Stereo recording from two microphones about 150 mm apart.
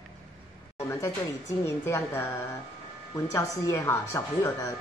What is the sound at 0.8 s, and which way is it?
Speech, 15° left (ahead or behind).